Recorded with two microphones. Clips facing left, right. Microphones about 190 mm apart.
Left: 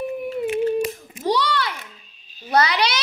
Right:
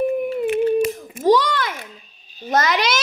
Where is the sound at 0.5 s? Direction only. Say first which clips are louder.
Right 3 dB; 50° right (ahead or behind).